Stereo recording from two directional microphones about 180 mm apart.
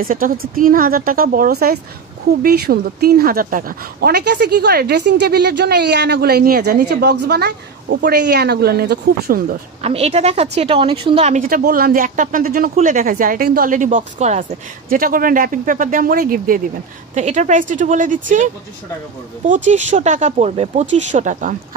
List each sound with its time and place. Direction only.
0.0 s a woman's voice: 50° right (ahead or behind)
9.8 s a woman's voice: 35° right (ahead or behind); by 16.6 s 50° right (ahead or behind)
17.1 s a woman's voice: 40° right (ahead or behind)